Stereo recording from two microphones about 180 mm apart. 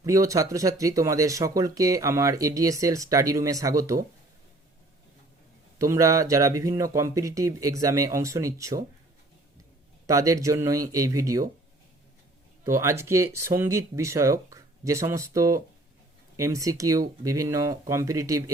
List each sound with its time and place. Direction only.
0.0 s speech: 20° right (ahead or behind)
5.8 s speech: 15° right (ahead or behind)
10.1 s speech: 20° right (ahead or behind)
12.6 s speech: 15° right (ahead or behind)